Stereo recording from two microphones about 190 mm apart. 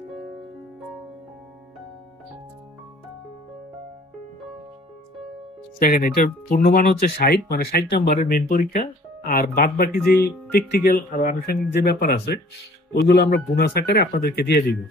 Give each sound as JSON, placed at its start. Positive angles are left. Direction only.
{"t": 5.8, "sound": "speech", "side_deg": 45}
{"t": 8.2, "sound": "a man's voice", "side_deg": 45}